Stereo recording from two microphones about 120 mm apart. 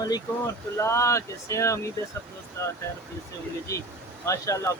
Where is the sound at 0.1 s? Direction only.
25° left (ahead or behind).